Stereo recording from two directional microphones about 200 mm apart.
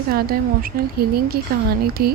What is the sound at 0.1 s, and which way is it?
Speech, 50° right (ahead or behind).